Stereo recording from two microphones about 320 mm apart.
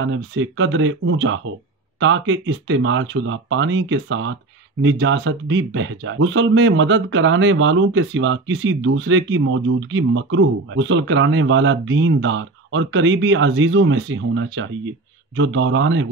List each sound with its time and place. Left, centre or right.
0.0 s speech: right